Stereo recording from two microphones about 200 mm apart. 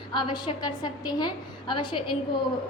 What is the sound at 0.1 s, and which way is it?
A woman's voice, 25° left (ahead or behind).